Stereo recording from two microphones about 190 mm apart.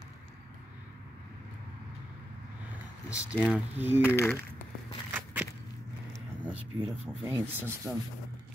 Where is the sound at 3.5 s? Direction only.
10° right (ahead or behind).